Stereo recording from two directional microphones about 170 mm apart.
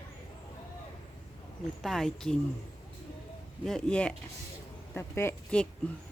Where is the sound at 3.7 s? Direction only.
5° left (ahead or behind).